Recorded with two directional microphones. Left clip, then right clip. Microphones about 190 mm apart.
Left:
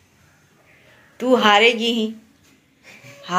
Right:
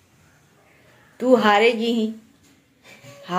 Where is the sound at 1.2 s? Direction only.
10° right (ahead or behind).